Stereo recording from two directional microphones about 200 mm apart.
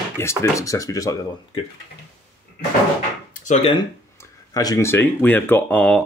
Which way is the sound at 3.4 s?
40° left (ahead or behind).